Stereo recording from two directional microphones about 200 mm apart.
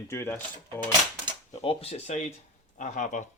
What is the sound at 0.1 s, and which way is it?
Speech, 10° left (ahead or behind).